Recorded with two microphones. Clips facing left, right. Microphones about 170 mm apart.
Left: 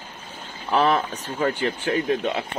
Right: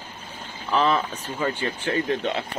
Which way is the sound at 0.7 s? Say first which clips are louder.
Left 2 dB; 40° left (ahead or behind).